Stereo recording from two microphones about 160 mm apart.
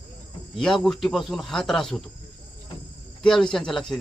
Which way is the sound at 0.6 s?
Centre (ahead or behind).